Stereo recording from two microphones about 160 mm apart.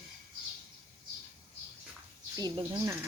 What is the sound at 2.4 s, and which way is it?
Speech, 25° right (ahead or behind).